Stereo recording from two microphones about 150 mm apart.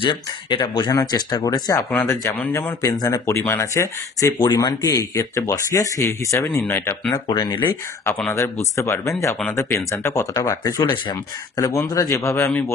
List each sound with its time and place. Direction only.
0.0 s speech: 35° left (ahead or behind)
1.9 s speech: 15° left (ahead or behind)
7.2 s speech: 30° left (ahead or behind)
7.6 s speech: 10° left (ahead or behind)